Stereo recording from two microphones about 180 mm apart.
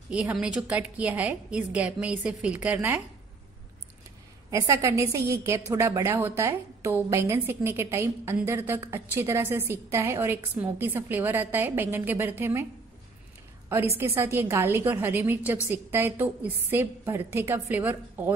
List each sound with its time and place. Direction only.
0.1 s a woman's voice: 5° right (ahead or behind)
4.5 s a woman's voice: 15° right (ahead or behind)
13.7 s a woman's voice: 10° right (ahead or behind)